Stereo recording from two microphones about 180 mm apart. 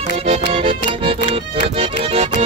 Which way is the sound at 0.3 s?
30° right (ahead or behind).